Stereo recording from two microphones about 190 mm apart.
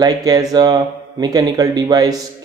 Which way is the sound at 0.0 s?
20° right (ahead or behind).